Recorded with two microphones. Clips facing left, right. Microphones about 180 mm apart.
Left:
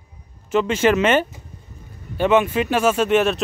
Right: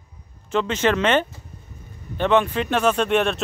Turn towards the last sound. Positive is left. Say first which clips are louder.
# left 3 dB
turn(degrees=0)  # may be behind; listen again after turning